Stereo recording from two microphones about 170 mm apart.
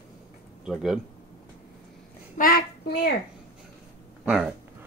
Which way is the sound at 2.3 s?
60° left (ahead or behind).